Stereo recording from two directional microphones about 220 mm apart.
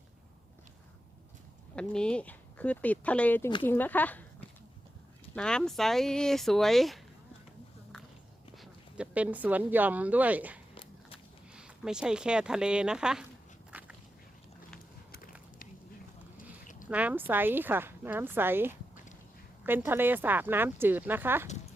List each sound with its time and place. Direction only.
1.7 s speech: 5° left (ahead or behind)
5.3 s speech: 5° left (ahead or behind)
8.5 s speech: 5° right (ahead or behind)
13.7 s walk: 5° right (ahead or behind)
15.1 s a sound: 40° left (ahead or behind)
16.9 s speech: 5° right (ahead or behind)